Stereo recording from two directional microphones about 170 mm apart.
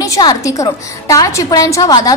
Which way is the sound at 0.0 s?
20° left (ahead or behind).